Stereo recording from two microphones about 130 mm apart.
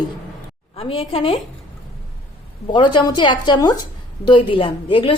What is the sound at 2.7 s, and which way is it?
A woman's voice, 35° left (ahead or behind).